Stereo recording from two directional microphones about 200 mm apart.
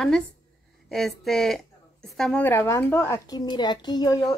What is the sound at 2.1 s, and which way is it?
A woman's voice, 5° left (ahead or behind).